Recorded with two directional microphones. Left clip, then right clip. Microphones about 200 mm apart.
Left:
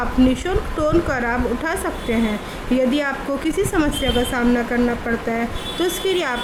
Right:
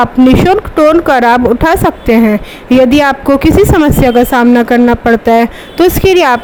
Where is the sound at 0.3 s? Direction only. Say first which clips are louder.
Right 15 dB; 35° right (ahead or behind).